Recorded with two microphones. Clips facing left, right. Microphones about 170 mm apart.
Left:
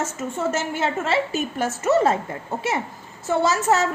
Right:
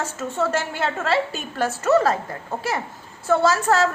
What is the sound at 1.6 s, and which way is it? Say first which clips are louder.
Speech: right 1 dB; 20° left (ahead or behind).